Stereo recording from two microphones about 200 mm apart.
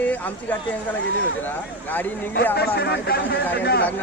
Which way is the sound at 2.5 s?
50° left (ahead or behind).